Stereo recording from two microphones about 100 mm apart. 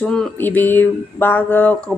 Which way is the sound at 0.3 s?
20° left (ahead or behind).